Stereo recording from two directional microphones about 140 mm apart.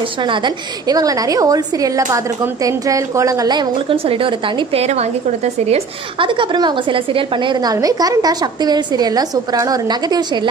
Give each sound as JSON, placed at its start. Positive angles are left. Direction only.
{"t": 0.2, "sound": "a woman's voice", "side_deg": -35}
{"t": 4.8, "sound": "a woman's voice", "side_deg": -50}
{"t": 6.1, "sound": "a woman's voice", "side_deg": -35}